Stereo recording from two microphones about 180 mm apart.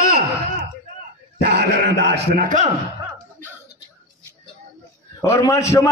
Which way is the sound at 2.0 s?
70° right (ahead or behind).